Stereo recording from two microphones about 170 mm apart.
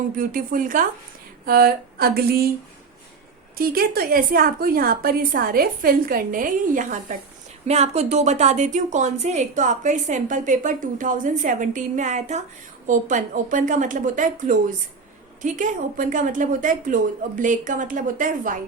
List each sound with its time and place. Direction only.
0.2 s a woman's voice: 55° right (ahead or behind)
3.6 s a woman's voice: 60° right (ahead or behind)
7.7 s a woman's voice: 40° right (ahead or behind)